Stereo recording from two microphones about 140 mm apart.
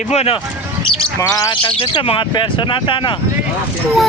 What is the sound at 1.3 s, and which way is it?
Speech, 25° left (ahead or behind).